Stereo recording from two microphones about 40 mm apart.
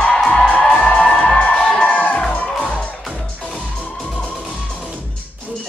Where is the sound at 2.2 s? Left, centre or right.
Left.